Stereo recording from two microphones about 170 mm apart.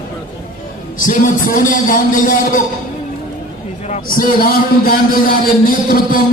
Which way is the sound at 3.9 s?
55° left (ahead or behind).